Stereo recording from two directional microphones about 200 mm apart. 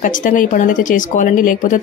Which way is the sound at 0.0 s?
40° left (ahead or behind).